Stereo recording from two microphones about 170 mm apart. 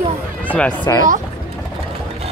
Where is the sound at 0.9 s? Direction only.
20° left (ahead or behind).